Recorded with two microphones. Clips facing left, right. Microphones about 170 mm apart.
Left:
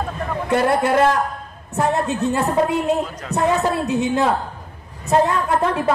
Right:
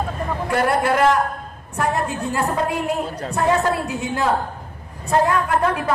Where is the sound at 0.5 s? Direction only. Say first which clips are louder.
Left 2 dB; 20° left (ahead or behind).